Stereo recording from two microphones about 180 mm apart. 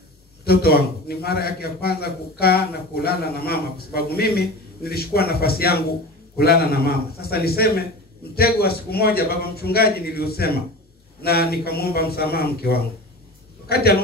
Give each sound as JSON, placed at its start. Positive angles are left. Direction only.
{"t": 0.5, "sound": "a man's voice", "side_deg": 60}